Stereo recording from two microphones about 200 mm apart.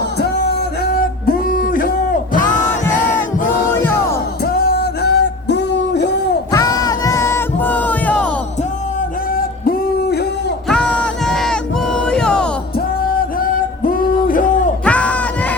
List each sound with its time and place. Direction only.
1.3 s music: 45° left (ahead or behind)
3.8 s music: 10° left (ahead or behind)
4.4 s music: 50° left (ahead or behind)
6.5 s music: 15° left (ahead or behind)
9.0 s music: 45° left (ahead or behind)
10.7 s crowd: 5° left (ahead or behind)
13.4 s music: 45° left (ahead or behind)
14.3 s a sound: 40° left (ahead or behind)
14.8 s a sound: 5° left (ahead or behind)